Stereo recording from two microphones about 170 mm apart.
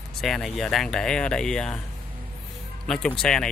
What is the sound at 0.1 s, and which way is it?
Speech, centre (ahead or behind).